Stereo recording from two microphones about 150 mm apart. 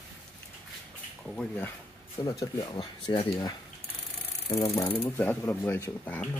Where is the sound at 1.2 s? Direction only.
10° left (ahead or behind).